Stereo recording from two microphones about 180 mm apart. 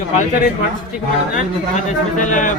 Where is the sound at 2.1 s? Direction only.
45° left (ahead or behind).